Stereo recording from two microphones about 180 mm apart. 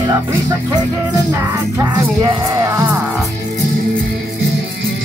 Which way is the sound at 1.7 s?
20° right (ahead or behind).